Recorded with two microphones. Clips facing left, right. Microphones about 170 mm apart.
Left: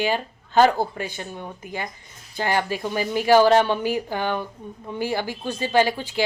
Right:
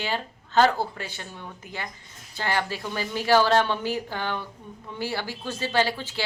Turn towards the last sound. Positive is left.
turn(degrees=15)  # may be behind; listen again after turning